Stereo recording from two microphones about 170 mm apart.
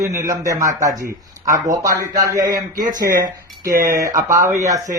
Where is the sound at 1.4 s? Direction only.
50° right (ahead or behind).